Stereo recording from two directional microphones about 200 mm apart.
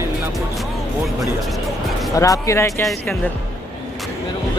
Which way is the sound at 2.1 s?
15° left (ahead or behind).